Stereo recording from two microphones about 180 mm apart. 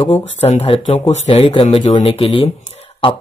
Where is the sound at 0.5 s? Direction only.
35° left (ahead or behind).